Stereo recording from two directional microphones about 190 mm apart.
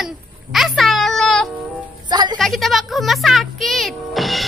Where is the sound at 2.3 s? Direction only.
Centre (ahead or behind).